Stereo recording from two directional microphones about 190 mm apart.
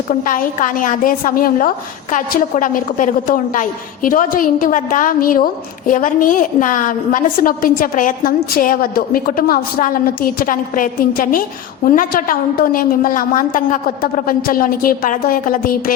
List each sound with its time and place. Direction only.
0.1 s a woman's voice: 45° left (ahead or behind)